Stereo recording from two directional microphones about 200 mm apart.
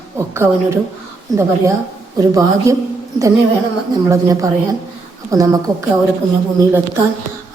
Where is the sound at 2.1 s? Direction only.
15° right (ahead or behind).